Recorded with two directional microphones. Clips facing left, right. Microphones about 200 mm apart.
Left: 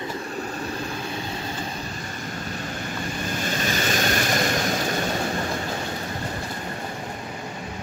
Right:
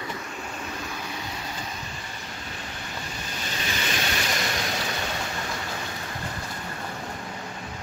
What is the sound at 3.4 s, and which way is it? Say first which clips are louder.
Vehicle: left 5 dB; 45° left (ahead or behind).